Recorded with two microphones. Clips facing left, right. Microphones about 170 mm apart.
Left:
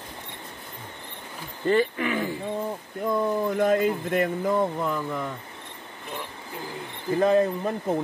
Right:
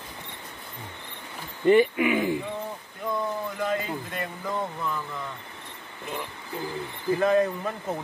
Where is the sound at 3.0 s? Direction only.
50° left (ahead or behind).